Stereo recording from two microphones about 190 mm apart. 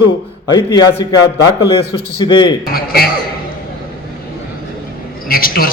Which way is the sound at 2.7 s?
50° left (ahead or behind).